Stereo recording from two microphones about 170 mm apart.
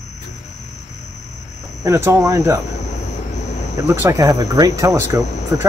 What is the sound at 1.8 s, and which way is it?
Speech, 15° right (ahead or behind).